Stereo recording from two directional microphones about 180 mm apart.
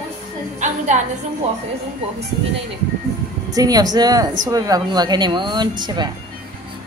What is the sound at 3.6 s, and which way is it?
Speech, 20° right (ahead or behind).